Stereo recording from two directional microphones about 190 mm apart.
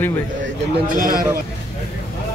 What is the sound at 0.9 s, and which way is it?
Speech, 45° right (ahead or behind).